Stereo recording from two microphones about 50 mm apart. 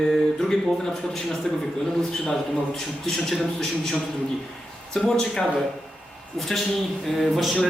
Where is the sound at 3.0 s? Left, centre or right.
Centre.